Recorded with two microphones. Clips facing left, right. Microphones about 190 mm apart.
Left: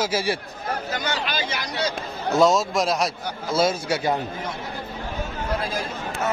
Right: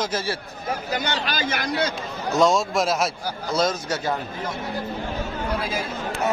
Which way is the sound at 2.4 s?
Centre (ahead or behind).